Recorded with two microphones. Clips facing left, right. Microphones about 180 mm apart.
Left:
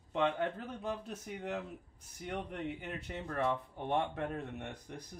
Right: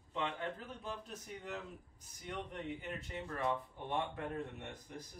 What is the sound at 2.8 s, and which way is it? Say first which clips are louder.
A man's voice: left 2 dB; 60° left (ahead or behind).